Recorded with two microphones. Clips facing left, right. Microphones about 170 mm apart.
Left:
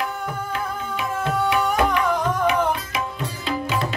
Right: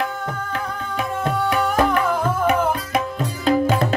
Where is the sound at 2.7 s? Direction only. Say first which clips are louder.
Right 3 dB; 45° right (ahead or behind).